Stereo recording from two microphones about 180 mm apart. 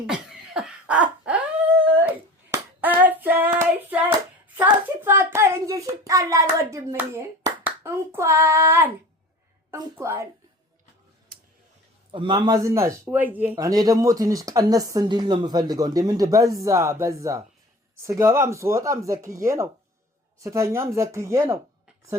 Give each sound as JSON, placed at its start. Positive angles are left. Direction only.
{"t": 0.1, "sound": "dog", "side_deg": -5}
{"t": 4.5, "sound": "hands", "side_deg": -10}
{"t": 9.7, "sound": "a sound", "side_deg": -15}
{"t": 12.1, "sound": "speech", "side_deg": -25}
{"t": 13.7, "sound": "speech", "side_deg": -20}